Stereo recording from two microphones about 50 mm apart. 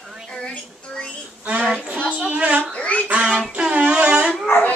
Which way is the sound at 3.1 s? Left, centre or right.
Right.